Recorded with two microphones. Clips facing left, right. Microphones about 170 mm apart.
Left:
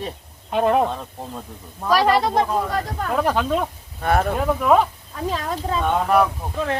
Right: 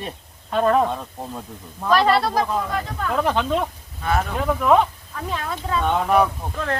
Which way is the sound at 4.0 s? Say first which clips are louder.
Left 3 dB; 50° left (ahead or behind).